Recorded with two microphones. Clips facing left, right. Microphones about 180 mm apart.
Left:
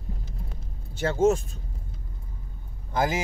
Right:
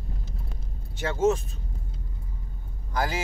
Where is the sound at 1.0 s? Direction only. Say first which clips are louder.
Left 2 dB; 35° left (ahead or behind).